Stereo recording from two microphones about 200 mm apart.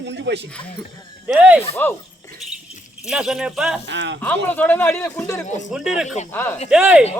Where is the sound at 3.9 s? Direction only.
60° right (ahead or behind).